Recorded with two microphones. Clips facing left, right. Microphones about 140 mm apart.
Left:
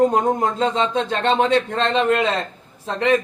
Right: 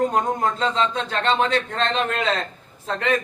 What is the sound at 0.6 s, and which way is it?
A man's voice, 25° left (ahead or behind).